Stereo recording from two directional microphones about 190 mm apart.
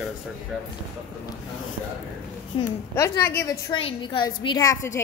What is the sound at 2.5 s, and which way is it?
Speech, 30° left (ahead or behind).